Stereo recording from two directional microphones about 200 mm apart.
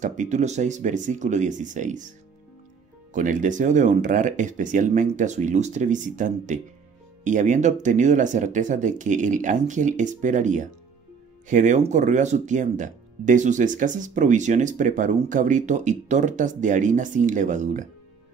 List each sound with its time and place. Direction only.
0.0 s speech: 40° right (ahead or behind)